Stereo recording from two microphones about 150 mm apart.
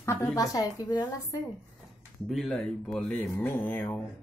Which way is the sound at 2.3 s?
5° left (ahead or behind).